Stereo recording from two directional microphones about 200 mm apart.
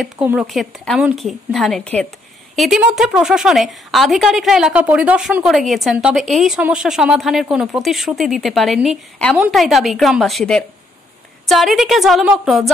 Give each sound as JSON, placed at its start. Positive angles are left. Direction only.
{"t": 0.0, "sound": "a woman's voice", "side_deg": -5}